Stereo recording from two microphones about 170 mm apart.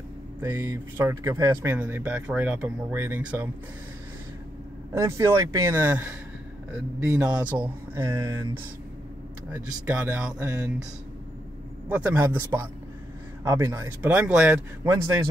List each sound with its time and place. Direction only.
0.4 s speech: 20° right (ahead or behind)
4.9 s speech: 15° right (ahead or behind)
11.9 s speech: 10° right (ahead or behind)
14.9 s speech: 20° right (ahead or behind)